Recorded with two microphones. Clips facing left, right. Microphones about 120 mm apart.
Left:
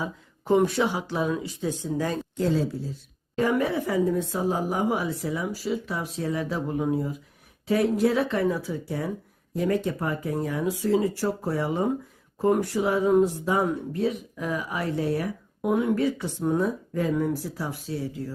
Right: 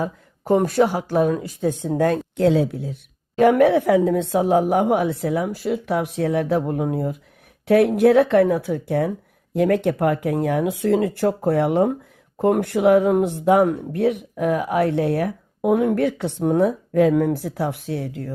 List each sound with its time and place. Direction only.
0.0 s speech: 50° right (ahead or behind); by 18.3 s 65° right (ahead or behind)